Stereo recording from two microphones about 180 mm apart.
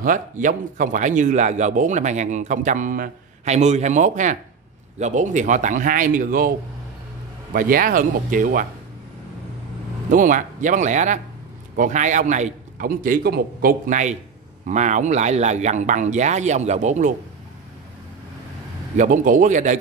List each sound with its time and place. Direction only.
0.0 s speech: 45° right (ahead or behind)
7.5 s speech: 50° right (ahead or behind)
10.1 s speech: 45° right (ahead or behind)
18.9 s speech: 45° right (ahead or behind)